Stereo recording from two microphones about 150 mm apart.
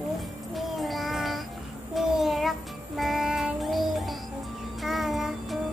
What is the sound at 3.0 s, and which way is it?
Music, centre (ahead or behind).